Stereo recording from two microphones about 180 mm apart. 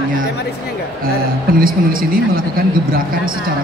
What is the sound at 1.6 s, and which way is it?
A man's voice, 55° right (ahead or behind).